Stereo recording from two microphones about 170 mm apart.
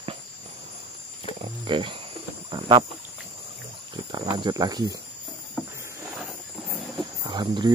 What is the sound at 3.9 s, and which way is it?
Speech, 25° right (ahead or behind).